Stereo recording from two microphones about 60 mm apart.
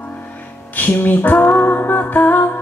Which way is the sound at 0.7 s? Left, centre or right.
Left.